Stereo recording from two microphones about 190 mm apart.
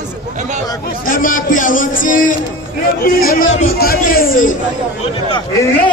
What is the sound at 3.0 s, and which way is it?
A man's voice, 50° left (ahead or behind).